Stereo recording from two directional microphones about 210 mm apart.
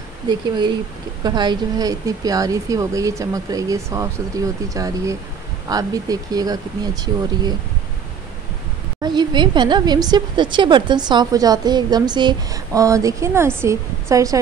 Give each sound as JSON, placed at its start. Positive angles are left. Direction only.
{"t": 0.3, "sound": "a woman's voice", "side_deg": -20}
{"t": 9.0, "sound": "a woman's voice", "side_deg": -20}